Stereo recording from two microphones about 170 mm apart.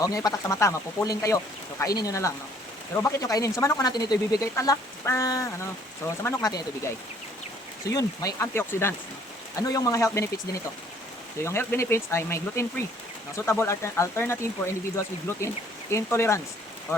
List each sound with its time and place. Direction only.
0.0 s speech: 20° left (ahead or behind)
11.4 s speech: 15° left (ahead or behind)